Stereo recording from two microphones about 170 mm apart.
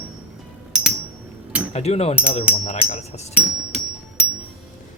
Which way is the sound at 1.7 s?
40° left (ahead or behind).